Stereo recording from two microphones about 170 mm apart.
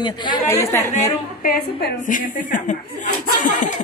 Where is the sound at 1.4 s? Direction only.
60° left (ahead or behind).